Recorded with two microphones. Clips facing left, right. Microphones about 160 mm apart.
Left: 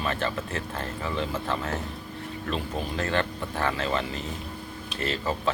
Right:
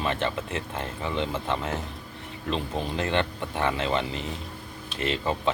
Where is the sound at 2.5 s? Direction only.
25° right (ahead or behind).